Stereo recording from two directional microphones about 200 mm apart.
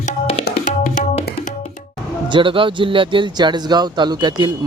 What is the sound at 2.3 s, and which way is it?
Speech, 25° right (ahead or behind).